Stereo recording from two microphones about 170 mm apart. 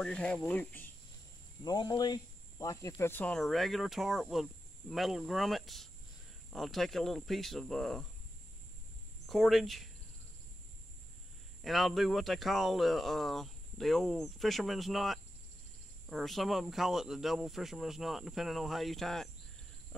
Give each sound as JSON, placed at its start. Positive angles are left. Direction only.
{"t": 0.0, "sound": "speech", "side_deg": 5}
{"t": 1.6, "sound": "speech", "side_deg": 25}
{"t": 9.2, "sound": "speech", "side_deg": 0}
{"t": 11.6, "sound": "speech", "side_deg": 0}